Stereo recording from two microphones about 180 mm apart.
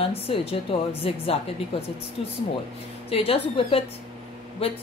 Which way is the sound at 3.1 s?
30° left (ahead or behind).